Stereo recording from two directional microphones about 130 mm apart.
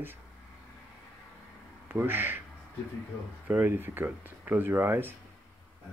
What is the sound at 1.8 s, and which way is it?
Speech, 15° right (ahead or behind).